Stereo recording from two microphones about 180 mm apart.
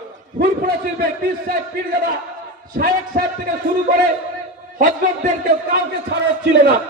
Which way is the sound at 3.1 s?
55° right (ahead or behind).